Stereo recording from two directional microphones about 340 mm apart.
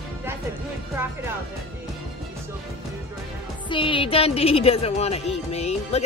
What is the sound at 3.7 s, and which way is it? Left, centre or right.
Speech, centre.